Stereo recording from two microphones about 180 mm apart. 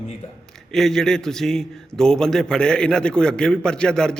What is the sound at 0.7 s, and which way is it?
A man's voice, centre (ahead or behind).